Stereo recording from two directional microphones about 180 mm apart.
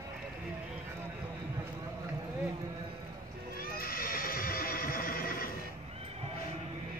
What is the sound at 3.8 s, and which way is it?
Neigh, 55° left (ahead or behind).